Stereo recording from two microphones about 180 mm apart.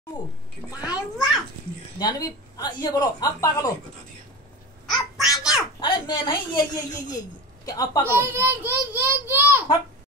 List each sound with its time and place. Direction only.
0.1 s a child's voice: 20° left (ahead or behind)
1.1 s a sound: centre (ahead or behind)
2.0 s a man's voice: 20° left (ahead or behind)
4.8 s babbling: centre (ahead or behind)
5.8 s a man's voice: 25° left (ahead or behind)
8.1 s a child's voice: 10° right (ahead or behind)